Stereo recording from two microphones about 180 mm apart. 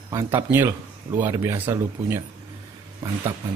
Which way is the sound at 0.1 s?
15° right (ahead or behind).